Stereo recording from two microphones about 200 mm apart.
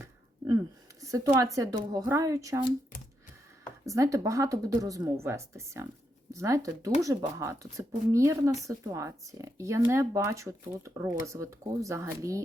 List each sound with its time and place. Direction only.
0.0 s a sound: 15° right (ahead or behind)
1.0 s a woman's voice: 15° right (ahead or behind)
3.8 s speech: 15° right (ahead or behind)